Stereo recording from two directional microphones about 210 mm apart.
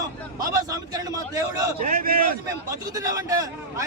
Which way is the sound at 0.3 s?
15° right (ahead or behind).